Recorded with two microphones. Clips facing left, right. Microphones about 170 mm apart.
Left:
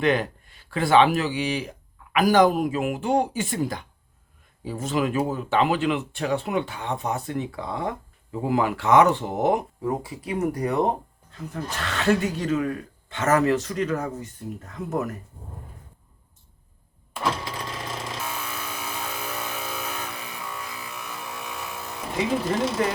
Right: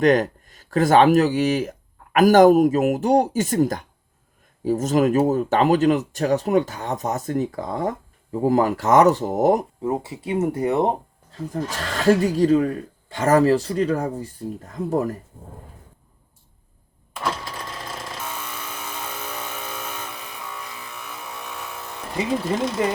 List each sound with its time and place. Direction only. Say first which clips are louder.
0.0 s speech: right 5 dB; 40° right (ahead or behind)
9.8 s speech: right 3 dB; 25° right (ahead or behind)
18.2 s vehicle: even; 5° left (ahead or behind)
20.1 s a sound: even; centre (ahead or behind)